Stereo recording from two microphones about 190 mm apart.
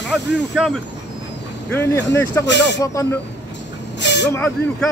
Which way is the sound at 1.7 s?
10° left (ahead or behind).